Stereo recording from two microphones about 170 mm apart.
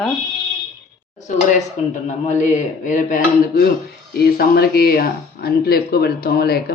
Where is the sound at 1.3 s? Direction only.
50° left (ahead or behind).